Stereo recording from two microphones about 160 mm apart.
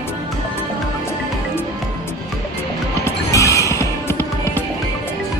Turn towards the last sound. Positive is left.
turn(degrees=15)  # may be behind; listen again after turning